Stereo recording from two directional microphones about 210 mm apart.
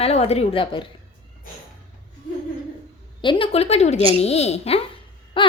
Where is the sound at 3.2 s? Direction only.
25° left (ahead or behind).